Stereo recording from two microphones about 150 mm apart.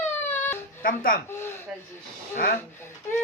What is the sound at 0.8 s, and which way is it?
Speech, 75° left (ahead or behind).